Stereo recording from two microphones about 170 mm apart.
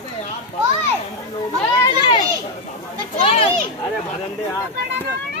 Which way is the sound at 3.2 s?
35° left (ahead or behind).